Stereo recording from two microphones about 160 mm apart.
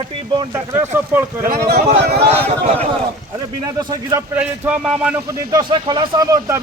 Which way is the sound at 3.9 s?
25° right (ahead or behind).